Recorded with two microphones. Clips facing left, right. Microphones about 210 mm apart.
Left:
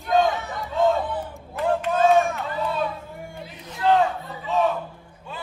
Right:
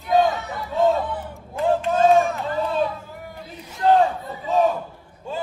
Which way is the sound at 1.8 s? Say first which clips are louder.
Right 1 dB; 30° right (ahead or behind).